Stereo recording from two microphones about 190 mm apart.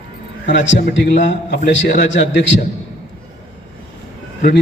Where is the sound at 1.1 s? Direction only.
35° left (ahead or behind).